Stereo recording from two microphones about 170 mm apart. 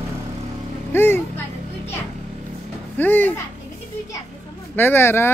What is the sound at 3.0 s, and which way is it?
Speech, 10° left (ahead or behind).